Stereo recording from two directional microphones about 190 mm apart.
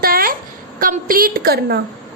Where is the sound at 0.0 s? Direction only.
50° right (ahead or behind).